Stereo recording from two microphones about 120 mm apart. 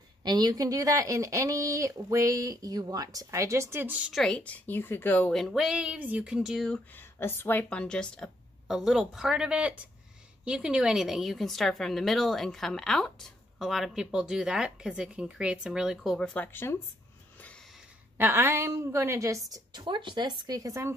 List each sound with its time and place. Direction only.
0.2 s speech: 35° right (ahead or behind); by 4.1 s 15° right (ahead or behind)
4.1 s a woman's voice: 5° left (ahead or behind)
5.3 s a woman's voice: centre (ahead or behind)
6.9 s a woman's voice: 20° left (ahead or behind)
8.6 s a woman's voice: 5° right (ahead or behind)
16.2 s a woman's voice: 15° left (ahead or behind)
17.4 s snort: 10° left (ahead or behind)
18.1 s speech: 20° right (ahead or behind)